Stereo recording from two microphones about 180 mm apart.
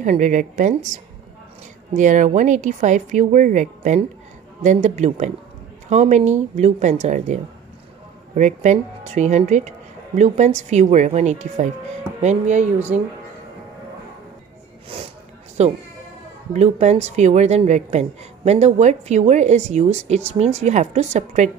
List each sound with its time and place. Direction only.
0.0 s a woman's voice: 45° right (ahead or behind)
8.4 s a woman's voice: 40° right (ahead or behind)
15.6 s a woman's voice: 40° right (ahead or behind)